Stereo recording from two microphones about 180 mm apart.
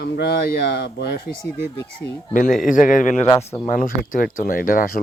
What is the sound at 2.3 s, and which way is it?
Speech, 50° left (ahead or behind).